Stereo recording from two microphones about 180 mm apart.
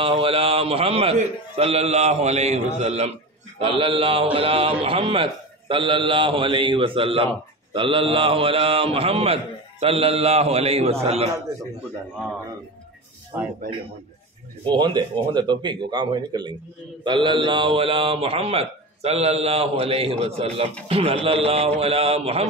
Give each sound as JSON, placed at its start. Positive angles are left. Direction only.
{"t": 0.0, "sound": "a man's voice", "side_deg": -30}
{"t": 13.3, "sound": "speech", "side_deg": -15}
{"t": 14.6, "sound": "a man's voice", "side_deg": -25}